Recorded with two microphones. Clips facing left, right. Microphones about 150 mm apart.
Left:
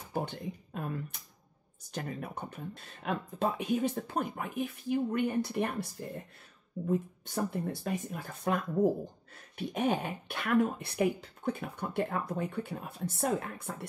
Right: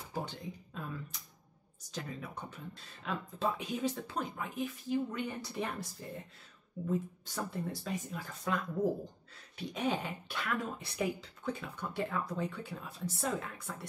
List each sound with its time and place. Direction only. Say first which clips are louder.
0.1 s speech: left 5 dB; 55° left (ahead or behind)